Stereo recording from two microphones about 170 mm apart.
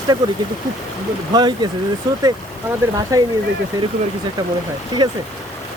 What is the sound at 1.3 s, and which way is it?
Speech, 25° right (ahead or behind).